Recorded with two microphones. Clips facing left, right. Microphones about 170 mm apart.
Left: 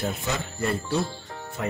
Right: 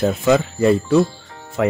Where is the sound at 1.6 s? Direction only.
90° right.